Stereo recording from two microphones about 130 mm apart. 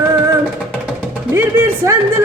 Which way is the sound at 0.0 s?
15° right (ahead or behind).